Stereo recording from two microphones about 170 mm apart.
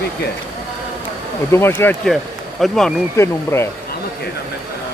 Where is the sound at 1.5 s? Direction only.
15° left (ahead or behind).